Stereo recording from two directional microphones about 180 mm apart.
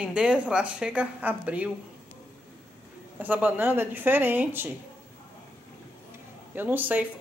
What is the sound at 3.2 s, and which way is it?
A woman's voice, 10° right (ahead or behind).